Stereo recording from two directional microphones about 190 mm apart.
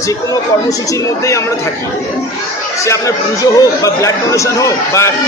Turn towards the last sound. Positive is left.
turn(degrees=15)  # may be behind; listen again after turning